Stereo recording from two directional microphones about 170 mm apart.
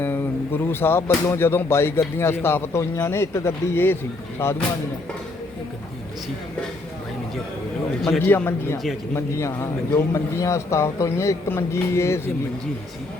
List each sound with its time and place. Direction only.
0.0 s speech: 10° left (ahead or behind)
8.2 s speech: 10° left (ahead or behind)